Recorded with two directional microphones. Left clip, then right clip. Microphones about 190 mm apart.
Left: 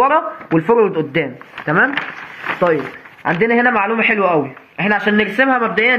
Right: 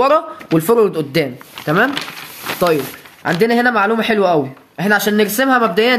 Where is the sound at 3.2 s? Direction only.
70° right (ahead or behind).